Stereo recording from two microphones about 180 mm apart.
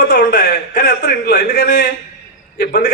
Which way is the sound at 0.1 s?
70° left (ahead or behind).